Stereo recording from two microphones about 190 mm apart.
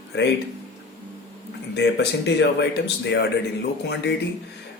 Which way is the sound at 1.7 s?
60° left (ahead or behind).